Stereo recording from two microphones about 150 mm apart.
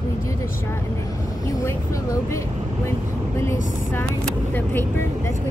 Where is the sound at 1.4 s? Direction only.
20° left (ahead or behind).